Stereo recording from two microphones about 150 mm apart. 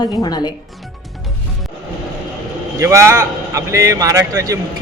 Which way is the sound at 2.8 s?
20° right (ahead or behind).